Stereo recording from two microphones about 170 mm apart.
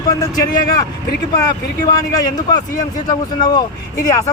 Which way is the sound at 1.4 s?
20° left (ahead or behind).